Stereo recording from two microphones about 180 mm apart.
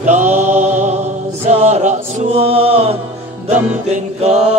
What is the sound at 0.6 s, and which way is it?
Music, 40° right (ahead or behind).